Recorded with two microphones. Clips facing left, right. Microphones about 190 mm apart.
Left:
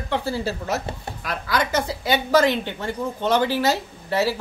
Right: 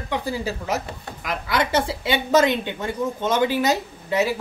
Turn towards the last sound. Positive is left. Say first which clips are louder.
# even
turn(degrees=-20)  # may be behind; listen again after turning